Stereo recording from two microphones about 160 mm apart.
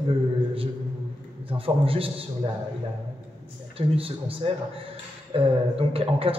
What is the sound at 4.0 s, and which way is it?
A man's voice, 35° right (ahead or behind).